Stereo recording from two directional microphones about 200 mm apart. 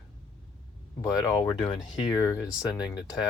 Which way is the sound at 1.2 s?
15° left (ahead or behind).